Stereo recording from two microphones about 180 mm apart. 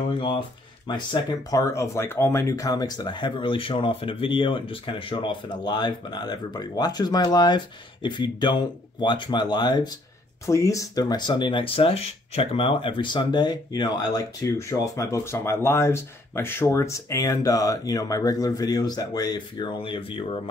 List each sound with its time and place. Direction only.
0.8 s speech: 25° left (ahead or behind)